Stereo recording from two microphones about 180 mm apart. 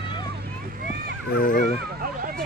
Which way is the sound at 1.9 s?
55° right (ahead or behind).